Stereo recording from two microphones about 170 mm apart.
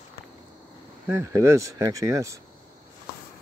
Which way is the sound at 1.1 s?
20° right (ahead or behind).